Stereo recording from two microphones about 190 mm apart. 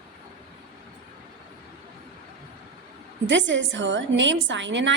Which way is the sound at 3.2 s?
75° right (ahead or behind).